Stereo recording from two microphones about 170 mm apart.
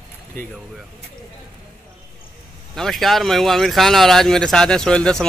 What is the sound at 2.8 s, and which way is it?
Speech, centre (ahead or behind).